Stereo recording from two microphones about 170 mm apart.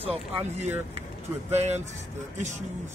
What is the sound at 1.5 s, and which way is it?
Speech, 40° right (ahead or behind).